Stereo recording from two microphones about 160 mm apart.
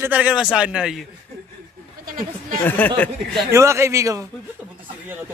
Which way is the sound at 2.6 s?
10° left (ahead or behind).